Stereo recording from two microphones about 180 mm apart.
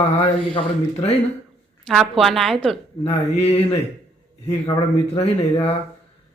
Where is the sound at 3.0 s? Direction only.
35° left (ahead or behind).